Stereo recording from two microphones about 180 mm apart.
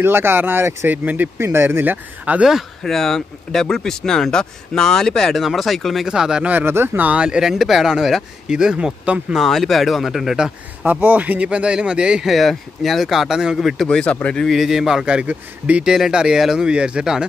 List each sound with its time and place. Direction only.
0.0 s speech: 15° right (ahead or behind)